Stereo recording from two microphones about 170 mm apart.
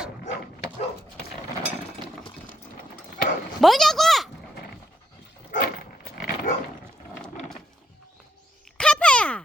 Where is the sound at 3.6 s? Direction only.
Centre (ahead or behind).